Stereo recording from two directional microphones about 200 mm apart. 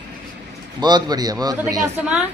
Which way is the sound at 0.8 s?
20° right (ahead or behind).